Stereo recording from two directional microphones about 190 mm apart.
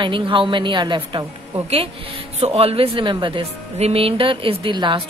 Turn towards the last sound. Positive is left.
turn(degrees=-25)  # may be behind; listen again after turning